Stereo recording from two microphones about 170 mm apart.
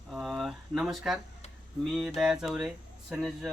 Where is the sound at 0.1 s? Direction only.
Centre (ahead or behind).